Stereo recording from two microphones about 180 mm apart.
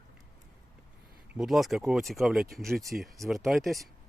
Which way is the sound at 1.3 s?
Centre (ahead or behind).